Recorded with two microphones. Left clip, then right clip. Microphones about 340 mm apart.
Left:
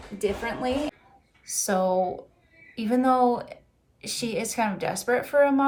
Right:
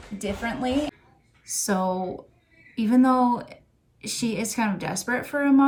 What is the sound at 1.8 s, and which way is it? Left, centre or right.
Speech, left.